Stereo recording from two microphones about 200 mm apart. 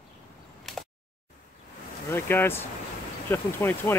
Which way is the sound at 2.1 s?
10° left (ahead or behind).